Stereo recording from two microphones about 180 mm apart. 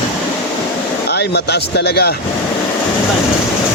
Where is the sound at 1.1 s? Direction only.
65° left (ahead or behind).